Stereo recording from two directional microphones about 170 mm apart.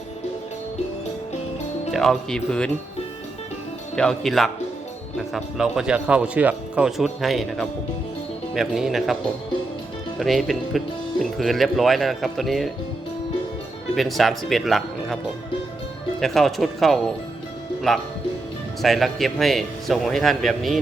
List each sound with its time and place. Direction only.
1.9 s speech: centre (ahead or behind)
3.9 s speech: 5° left (ahead or behind)
10.2 s speech: centre (ahead or behind)
13.9 s speech: centre (ahead or behind)
16.2 s speech: centre (ahead or behind)